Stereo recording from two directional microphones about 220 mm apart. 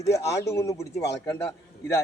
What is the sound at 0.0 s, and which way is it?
Speech, 15° left (ahead or behind).